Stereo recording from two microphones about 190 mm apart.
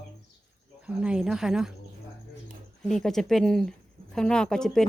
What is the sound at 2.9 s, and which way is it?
Speech, centre (ahead or behind).